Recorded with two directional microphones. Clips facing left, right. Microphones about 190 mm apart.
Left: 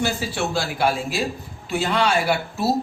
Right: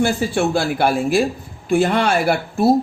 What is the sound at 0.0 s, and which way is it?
Speech, 55° right (ahead or behind).